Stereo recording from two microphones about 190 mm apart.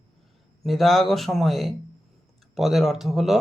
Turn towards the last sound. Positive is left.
turn(degrees=0)  # may be behind; listen again after turning